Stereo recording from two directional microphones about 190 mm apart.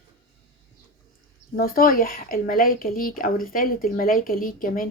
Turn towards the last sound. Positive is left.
turn(degrees=45)  # may be behind; listen again after turning